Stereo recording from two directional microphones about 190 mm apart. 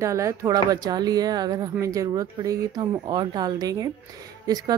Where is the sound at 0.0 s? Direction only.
15° right (ahead or behind).